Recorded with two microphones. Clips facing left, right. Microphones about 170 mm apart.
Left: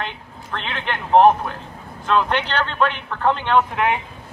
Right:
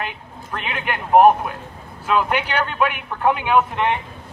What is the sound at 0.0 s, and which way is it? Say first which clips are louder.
A man's voice: even; 10° right (ahead or behind).